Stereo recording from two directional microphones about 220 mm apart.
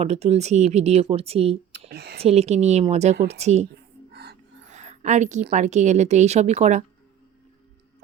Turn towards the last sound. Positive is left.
turn(degrees=-30)  # may be behind; listen again after turning